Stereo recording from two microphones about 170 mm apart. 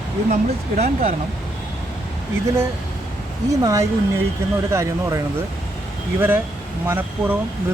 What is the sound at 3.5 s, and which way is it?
Speech, 20° right (ahead or behind).